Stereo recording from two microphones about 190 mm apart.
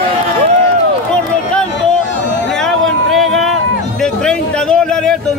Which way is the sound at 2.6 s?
Centre (ahead or behind).